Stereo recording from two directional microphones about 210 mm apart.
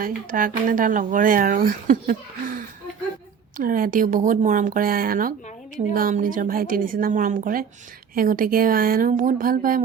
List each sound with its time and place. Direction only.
0.0 s speech: 40° right (ahead or behind)